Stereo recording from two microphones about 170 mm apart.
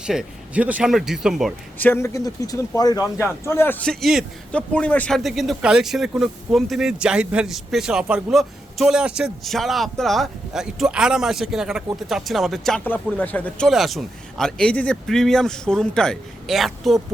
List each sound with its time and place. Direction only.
0.0 s a man's voice: 5° right (ahead or behind)
1.8 s a man's voice: 15° left (ahead or behind)